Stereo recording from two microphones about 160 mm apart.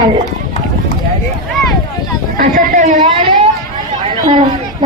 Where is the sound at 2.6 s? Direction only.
55° right (ahead or behind).